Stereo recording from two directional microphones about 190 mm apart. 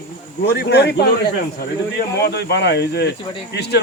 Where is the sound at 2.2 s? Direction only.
60° left (ahead or behind).